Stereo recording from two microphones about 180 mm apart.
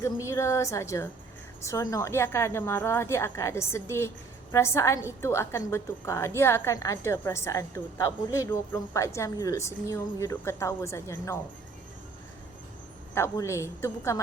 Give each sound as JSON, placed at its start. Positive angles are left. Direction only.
{"t": 0.3, "sound": "a woman's voice", "side_deg": 15}
{"t": 13.1, "sound": "a woman's voice", "side_deg": 15}